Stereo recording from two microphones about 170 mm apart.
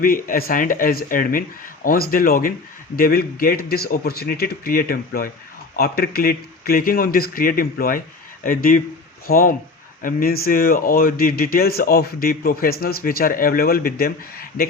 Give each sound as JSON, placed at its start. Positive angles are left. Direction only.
{"t": 0.0, "sound": "speech", "side_deg": 55}